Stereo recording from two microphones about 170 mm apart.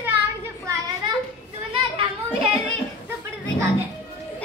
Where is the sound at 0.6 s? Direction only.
25° right (ahead or behind).